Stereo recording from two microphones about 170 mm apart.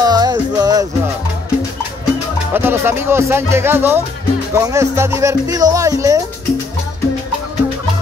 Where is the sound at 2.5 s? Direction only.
15° right (ahead or behind).